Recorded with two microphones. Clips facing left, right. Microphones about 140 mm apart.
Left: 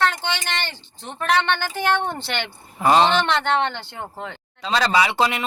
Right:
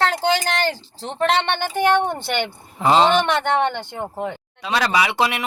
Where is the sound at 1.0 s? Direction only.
25° right (ahead or behind).